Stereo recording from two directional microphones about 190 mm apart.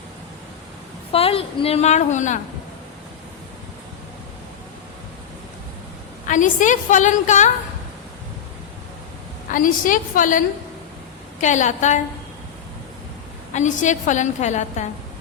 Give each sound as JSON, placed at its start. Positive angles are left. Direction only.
{"t": 1.1, "sound": "a woman's voice", "side_deg": 30}
{"t": 6.2, "sound": "a woman's voice", "side_deg": 40}
{"t": 9.5, "sound": "a woman's voice", "side_deg": 45}
{"t": 13.5, "sound": "a woman's voice", "side_deg": 40}